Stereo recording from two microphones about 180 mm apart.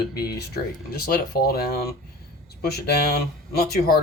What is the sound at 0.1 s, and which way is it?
Speech, 60° left (ahead or behind).